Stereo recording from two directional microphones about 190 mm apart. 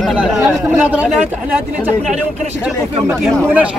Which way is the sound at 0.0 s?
5° right (ahead or behind).